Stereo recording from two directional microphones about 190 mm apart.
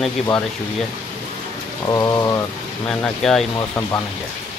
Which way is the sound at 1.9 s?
20° left (ahead or behind).